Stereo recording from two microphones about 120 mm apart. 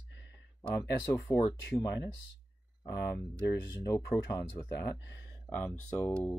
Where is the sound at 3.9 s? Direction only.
25° left (ahead or behind).